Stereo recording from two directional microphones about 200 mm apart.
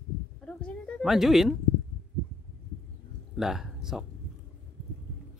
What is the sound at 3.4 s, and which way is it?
Speech, centre (ahead or behind).